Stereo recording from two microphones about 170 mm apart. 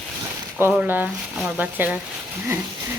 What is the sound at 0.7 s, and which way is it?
Speech, 10° right (ahead or behind).